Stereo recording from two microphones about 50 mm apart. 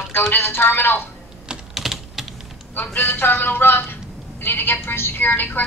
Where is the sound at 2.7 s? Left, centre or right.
Left.